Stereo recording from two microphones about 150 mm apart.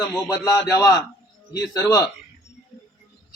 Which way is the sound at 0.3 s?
25° left (ahead or behind).